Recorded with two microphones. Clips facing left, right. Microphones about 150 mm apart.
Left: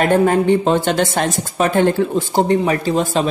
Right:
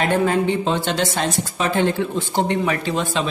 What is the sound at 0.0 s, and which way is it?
Speech, 45° left (ahead or behind).